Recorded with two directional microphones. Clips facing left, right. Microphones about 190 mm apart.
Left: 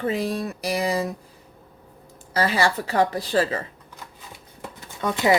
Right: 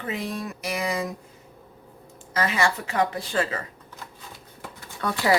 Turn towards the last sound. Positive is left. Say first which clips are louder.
# left 2 dB
turn(degrees=20)  # may be behind; listen again after turning